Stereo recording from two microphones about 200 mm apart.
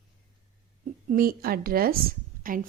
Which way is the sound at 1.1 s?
45° right (ahead or behind).